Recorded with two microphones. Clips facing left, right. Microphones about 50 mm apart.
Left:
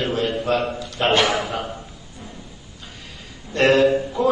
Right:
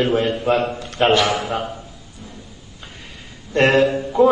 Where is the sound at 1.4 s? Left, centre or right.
Centre.